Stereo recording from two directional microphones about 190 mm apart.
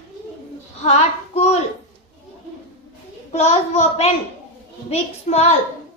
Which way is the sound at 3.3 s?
35° left (ahead or behind).